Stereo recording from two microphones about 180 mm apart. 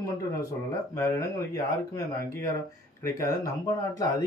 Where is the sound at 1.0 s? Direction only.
15° left (ahead or behind).